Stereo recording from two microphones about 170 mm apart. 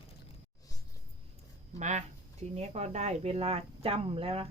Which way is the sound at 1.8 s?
45° right (ahead or behind).